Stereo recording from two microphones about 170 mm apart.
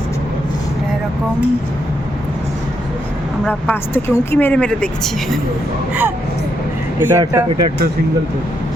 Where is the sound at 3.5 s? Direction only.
10° left (ahead or behind).